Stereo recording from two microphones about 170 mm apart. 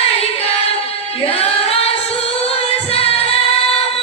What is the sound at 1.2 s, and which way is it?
Singing, 35° left (ahead or behind).